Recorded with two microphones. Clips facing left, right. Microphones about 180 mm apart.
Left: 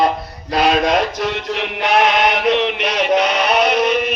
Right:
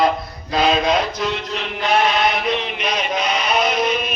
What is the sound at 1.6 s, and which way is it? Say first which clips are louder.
Chant: left 3 dB; 80° left.